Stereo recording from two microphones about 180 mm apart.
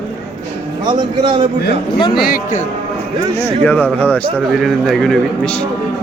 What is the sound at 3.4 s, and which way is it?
Speech, 10° left (ahead or behind).